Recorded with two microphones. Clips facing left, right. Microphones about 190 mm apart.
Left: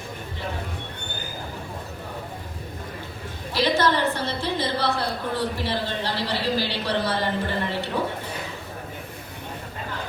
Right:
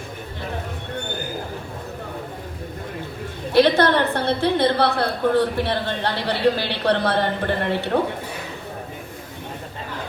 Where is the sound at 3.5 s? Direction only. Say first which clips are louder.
Right 6 dB; 60° right (ahead or behind).